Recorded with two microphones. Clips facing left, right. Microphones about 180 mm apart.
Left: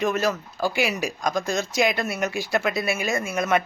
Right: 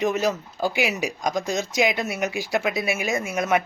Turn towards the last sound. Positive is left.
turn(degrees=-15)  # may be behind; listen again after turning